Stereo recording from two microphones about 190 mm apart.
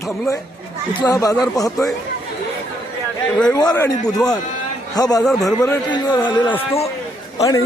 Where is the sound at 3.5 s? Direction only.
20° left (ahead or behind).